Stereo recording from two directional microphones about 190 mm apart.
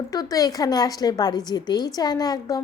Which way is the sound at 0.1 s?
20° left (ahead or behind).